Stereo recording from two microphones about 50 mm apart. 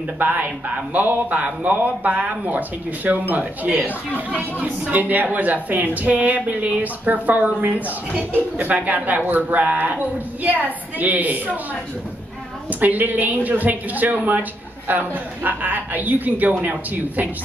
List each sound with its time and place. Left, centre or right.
0.2 s a woman's voice: right
12.6 s a woman's voice: right